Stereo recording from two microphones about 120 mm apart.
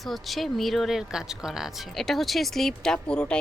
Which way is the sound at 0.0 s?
Centre (ahead or behind).